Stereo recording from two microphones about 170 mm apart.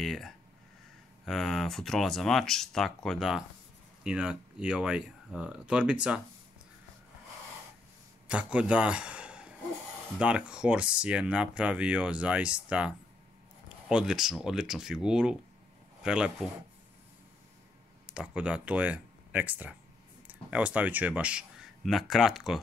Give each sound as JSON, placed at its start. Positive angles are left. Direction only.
{"t": 0.0, "sound": "speech", "side_deg": 0}
{"t": 8.3, "sound": "a man's voice", "side_deg": -5}
{"t": 18.0, "sound": "speech", "side_deg": -5}